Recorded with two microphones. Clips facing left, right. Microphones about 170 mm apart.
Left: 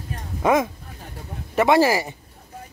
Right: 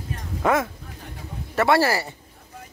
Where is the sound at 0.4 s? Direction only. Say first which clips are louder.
Left 3 dB; 15° left (ahead or behind).